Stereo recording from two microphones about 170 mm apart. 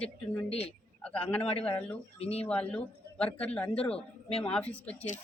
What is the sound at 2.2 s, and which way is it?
Speech, 35° left (ahead or behind).